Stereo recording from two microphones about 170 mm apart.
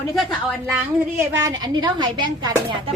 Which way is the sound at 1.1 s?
20° right (ahead or behind).